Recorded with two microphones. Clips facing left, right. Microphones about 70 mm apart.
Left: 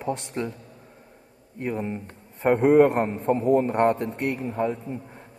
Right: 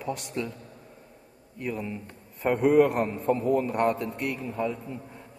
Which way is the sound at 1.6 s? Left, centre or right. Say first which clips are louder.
Left 4 dB; left.